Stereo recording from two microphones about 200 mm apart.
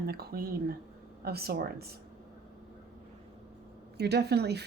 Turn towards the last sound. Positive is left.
turn(degrees=-55)  # may be behind; listen again after turning